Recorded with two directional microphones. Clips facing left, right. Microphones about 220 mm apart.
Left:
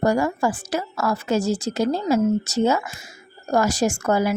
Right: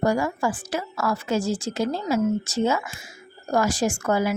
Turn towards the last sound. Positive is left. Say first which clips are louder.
# left 2 dB
turn(degrees=40)  # may be behind; listen again after turning